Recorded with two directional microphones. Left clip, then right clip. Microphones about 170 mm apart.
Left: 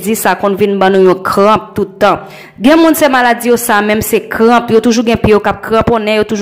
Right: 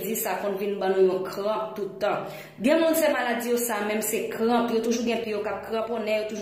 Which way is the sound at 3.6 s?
35° left (ahead or behind).